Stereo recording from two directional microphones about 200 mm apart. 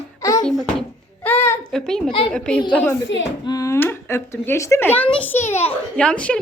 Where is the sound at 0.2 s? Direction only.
15° left (ahead or behind).